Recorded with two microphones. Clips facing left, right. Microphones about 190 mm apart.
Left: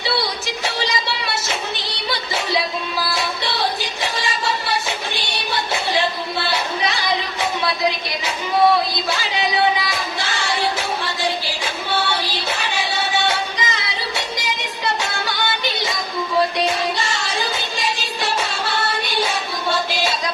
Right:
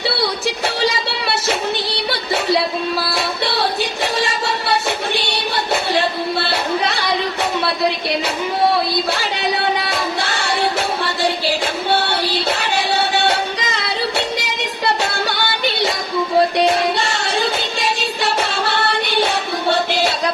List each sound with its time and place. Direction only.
0.9 s music: 60° right (ahead or behind)
6.5 s a sound: 60° right (ahead or behind)
9.8 s music: 60° right (ahead or behind)